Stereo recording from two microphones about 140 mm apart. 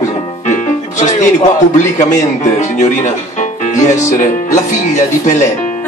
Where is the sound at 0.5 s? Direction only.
60° left (ahead or behind).